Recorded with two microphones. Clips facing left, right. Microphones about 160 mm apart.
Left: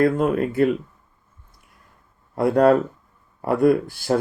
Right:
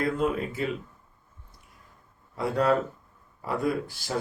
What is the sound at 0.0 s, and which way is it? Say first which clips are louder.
Speech: left 8 dB; 55° left (ahead or behind).